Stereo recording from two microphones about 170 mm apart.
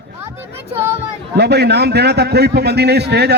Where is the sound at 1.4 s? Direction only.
75° right (ahead or behind).